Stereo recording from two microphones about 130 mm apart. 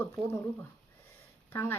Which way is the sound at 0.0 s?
20° left (ahead or behind).